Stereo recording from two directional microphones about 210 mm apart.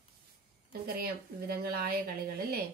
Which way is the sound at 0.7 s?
45° right (ahead or behind).